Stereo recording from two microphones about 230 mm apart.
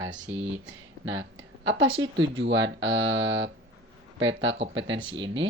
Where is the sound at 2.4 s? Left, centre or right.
Right.